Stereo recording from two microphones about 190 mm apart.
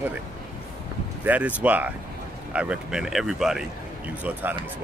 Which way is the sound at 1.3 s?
10° right (ahead or behind).